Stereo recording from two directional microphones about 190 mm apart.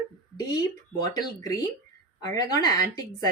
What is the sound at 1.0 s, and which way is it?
Speech, 20° left (ahead or behind).